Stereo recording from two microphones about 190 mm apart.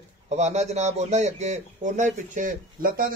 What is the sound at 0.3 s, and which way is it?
A man's voice, 35° right (ahead or behind).